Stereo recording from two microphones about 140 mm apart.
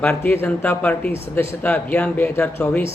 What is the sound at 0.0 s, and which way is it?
A man's voice, 10° left (ahead or behind).